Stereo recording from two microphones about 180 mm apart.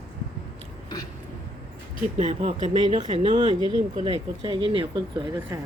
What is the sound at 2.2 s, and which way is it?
Speech, 35° right (ahead or behind).